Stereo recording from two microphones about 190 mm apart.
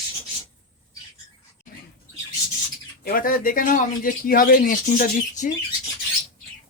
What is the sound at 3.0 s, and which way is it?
Speech, 50° left (ahead or behind).